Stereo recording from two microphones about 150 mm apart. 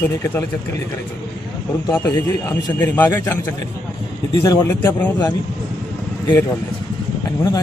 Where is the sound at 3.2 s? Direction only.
20° left (ahead or behind).